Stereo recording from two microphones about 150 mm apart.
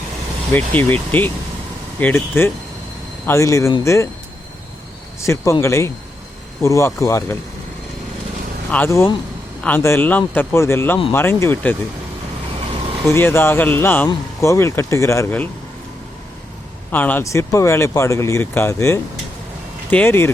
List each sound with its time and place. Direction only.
0.5 s speech: 10° left (ahead or behind)
5.2 s speech: 20° left (ahead or behind)
8.7 s speech: 15° left (ahead or behind)
13.1 s speech: 15° left (ahead or behind)
16.9 s speech: 10° left (ahead or behind)